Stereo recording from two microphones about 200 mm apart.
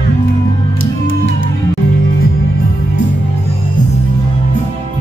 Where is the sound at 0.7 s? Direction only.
80° left.